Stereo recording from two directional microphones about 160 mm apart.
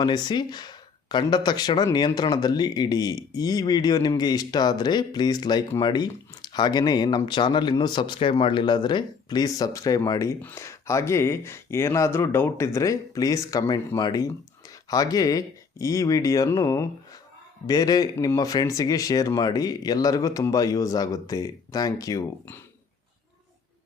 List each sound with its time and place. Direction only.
0.0 s speech: 25° left (ahead or behind)